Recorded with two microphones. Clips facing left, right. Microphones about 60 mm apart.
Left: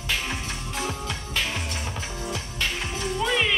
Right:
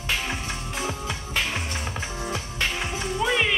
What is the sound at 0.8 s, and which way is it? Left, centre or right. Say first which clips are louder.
Music: even; centre.